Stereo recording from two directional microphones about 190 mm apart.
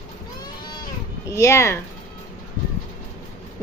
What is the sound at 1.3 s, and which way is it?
Speech, 15° left (ahead or behind).